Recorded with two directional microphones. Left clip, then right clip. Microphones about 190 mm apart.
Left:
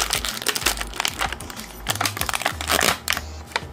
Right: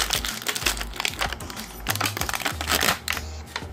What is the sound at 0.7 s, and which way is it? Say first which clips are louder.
Crumpling: left 2 dB; 5° left (ahead or behind).